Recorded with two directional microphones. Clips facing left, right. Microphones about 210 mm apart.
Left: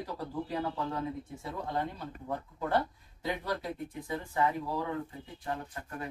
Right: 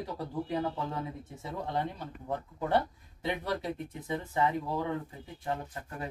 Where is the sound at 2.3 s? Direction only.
20° right (ahead or behind).